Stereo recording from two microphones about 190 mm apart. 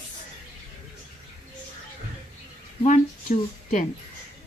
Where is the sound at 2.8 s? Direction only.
40° left (ahead or behind).